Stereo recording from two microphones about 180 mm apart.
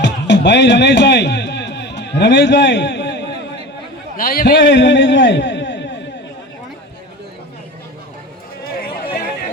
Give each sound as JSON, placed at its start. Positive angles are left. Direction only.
{"t": 0.0, "sound": "music", "side_deg": 75}
{"t": 4.2, "sound": "a man's voice", "side_deg": 55}